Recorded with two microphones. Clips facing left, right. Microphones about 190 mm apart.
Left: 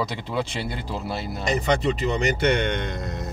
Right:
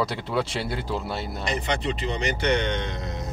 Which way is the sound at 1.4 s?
45° left (ahead or behind).